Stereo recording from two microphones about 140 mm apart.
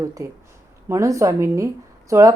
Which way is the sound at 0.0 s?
25° right (ahead or behind).